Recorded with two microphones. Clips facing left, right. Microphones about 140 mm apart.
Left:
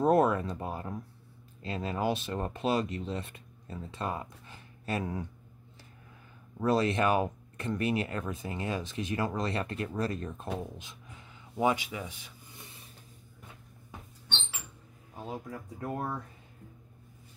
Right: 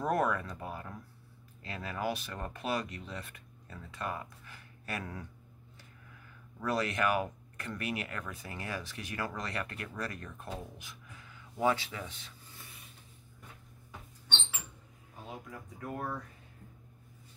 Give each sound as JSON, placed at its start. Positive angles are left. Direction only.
{"t": 0.0, "sound": "speech", "side_deg": 25}
{"t": 6.6, "sound": "speech", "side_deg": 25}
{"t": 10.6, "sound": "a sound", "side_deg": 25}
{"t": 15.8, "sound": "speech", "side_deg": 30}